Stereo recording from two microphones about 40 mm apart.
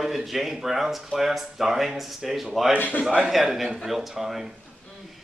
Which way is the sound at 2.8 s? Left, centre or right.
Left.